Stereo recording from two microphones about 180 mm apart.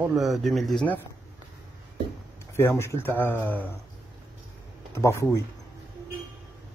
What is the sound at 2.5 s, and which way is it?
Speech, 15° left (ahead or behind).